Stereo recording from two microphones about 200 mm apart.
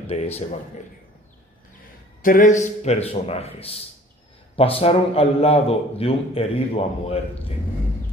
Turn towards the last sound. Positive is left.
turn(degrees=30)  # may be behind; listen again after turning